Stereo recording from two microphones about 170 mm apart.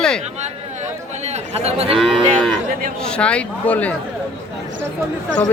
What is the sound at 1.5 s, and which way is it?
Speech, 35° right (ahead or behind).